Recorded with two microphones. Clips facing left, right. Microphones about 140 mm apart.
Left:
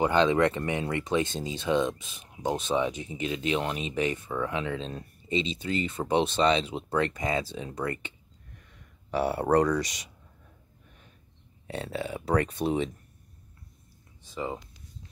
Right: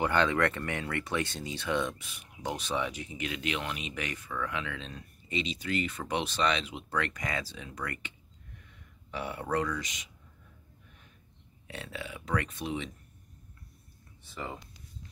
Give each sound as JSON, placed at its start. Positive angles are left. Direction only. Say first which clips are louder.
{"t": 0.0, "sound": "speech", "louder": "left 5 dB", "side_deg": 20}
{"t": 9.1, "sound": "speech", "louder": "left 9 dB", "side_deg": 35}
{"t": 11.6, "sound": "speech", "louder": "left 8 dB", "side_deg": 35}
{"t": 14.2, "sound": "speech", "louder": "left 6 dB", "side_deg": 15}